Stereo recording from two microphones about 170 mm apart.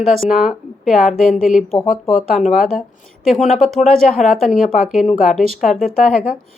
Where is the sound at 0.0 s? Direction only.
Centre (ahead or behind).